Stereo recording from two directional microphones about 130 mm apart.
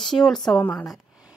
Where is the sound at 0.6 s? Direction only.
15° left (ahead or behind).